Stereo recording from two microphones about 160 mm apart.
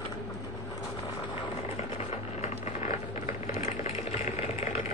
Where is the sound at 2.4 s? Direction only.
45° left (ahead or behind).